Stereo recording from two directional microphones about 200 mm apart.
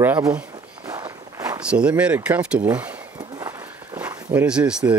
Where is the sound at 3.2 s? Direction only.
20° right (ahead or behind).